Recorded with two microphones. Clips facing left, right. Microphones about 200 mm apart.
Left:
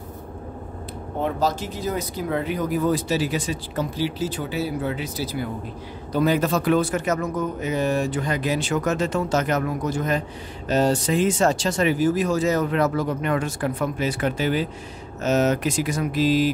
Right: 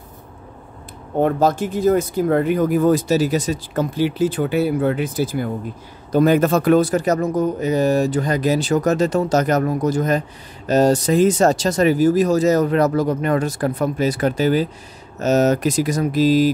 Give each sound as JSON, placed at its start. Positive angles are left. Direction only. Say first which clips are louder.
{"t": 1.2, "sound": "speech", "louder": "right 7 dB", "side_deg": -55}